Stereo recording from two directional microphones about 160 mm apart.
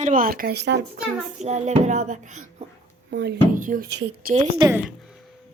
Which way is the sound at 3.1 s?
90° right.